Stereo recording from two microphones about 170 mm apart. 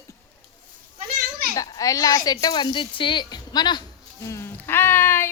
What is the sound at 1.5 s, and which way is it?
A woman's voice, 20° left (ahead or behind).